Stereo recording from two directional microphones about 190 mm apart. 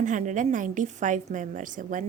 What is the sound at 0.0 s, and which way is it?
A woman's voice, 40° right (ahead or behind).